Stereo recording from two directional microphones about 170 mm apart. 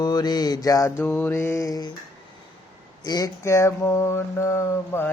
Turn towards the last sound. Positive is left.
turn(degrees=15)  # may be behind; listen again after turning